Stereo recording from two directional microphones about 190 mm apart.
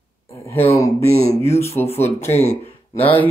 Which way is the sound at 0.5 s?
30° left (ahead or behind).